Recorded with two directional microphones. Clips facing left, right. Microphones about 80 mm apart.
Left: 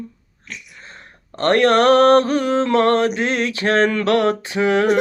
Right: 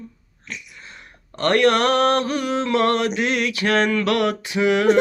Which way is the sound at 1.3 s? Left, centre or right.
Left.